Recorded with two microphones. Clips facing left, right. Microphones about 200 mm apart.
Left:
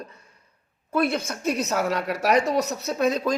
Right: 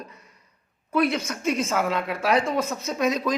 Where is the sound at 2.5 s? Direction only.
75° left (ahead or behind).